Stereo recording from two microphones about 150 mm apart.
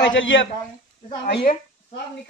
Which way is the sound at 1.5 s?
60° left (ahead or behind).